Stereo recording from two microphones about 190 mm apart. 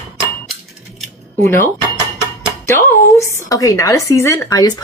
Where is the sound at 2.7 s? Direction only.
15° left (ahead or behind).